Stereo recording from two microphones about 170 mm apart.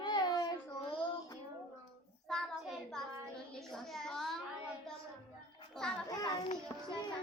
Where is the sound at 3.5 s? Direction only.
Centre (ahead or behind).